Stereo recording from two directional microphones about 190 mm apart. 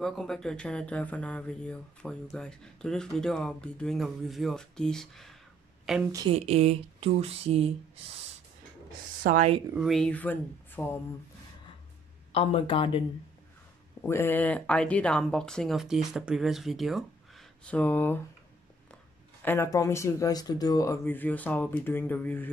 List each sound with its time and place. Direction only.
0.0 s speech: centre (ahead or behind)
6.1 s speech: 30° right (ahead or behind)
9.3 s speech: 40° right (ahead or behind)
9.8 s speech: centre (ahead or behind)
12.3 s speech: 30° left (ahead or behind)
14.0 s speech: 10° left (ahead or behind)
19.4 s speech: 15° left (ahead or behind)